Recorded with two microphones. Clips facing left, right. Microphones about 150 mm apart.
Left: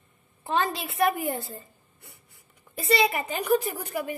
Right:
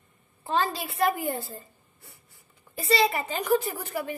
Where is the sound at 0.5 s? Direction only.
20° left (ahead or behind).